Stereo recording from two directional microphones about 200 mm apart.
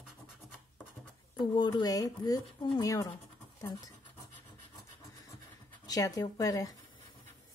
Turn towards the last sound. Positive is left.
turn(degrees=15)  # may be behind; listen again after turning